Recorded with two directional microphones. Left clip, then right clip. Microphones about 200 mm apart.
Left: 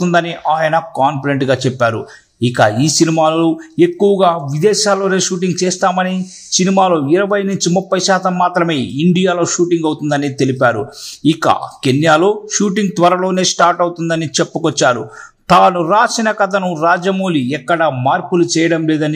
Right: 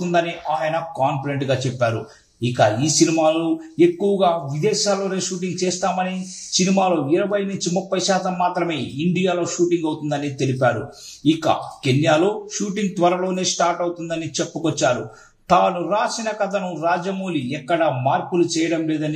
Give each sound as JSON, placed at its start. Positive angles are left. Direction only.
{"t": 0.1, "sound": "speech", "side_deg": 45}
{"t": 2.5, "sound": "speech", "side_deg": 50}